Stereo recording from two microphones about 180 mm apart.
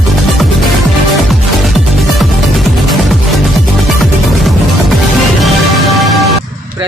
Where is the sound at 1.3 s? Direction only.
Centre (ahead or behind).